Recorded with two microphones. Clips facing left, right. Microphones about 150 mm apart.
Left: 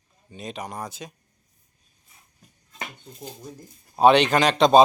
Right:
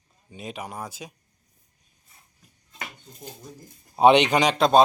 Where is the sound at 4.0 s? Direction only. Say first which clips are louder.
Even; 20° right (ahead or behind).